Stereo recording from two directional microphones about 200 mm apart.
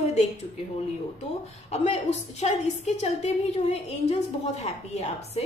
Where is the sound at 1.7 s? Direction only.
35° left (ahead or behind).